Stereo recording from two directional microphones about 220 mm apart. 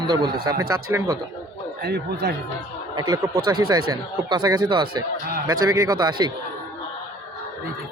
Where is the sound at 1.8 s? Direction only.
50° right (ahead or behind).